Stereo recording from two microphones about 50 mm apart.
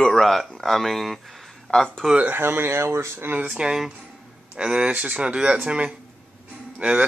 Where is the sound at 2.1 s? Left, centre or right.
Right.